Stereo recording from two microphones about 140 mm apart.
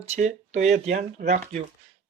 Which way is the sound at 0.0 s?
60° right (ahead or behind).